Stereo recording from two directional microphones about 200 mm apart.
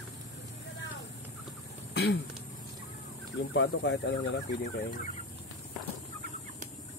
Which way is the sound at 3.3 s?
60° left (ahead or behind).